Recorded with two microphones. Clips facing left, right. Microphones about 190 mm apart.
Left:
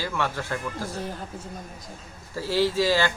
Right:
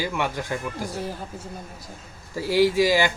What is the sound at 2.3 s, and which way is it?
Speech, 15° right (ahead or behind).